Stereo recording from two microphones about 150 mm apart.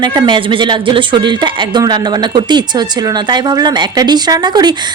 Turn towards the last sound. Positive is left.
turn(degrees=-25)  # may be behind; listen again after turning